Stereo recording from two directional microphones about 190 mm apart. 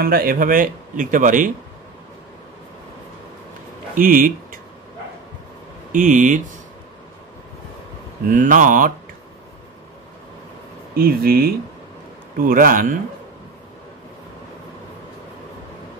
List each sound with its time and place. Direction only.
0.0 s speech: 50° right (ahead or behind)
3.9 s speech: 45° right (ahead or behind)
5.9 s speech: 40° right (ahead or behind)
8.3 s speech: 45° right (ahead or behind)
11.0 s speech: 50° right (ahead or behind)